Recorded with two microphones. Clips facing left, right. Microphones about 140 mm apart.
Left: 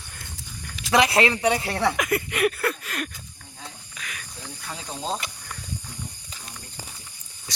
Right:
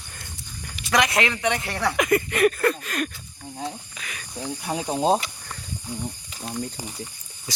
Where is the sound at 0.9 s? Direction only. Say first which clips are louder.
Left 2 dB; 30° left (ahead or behind).